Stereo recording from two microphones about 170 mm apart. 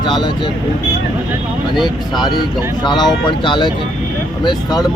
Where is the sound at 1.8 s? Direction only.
25° left (ahead or behind).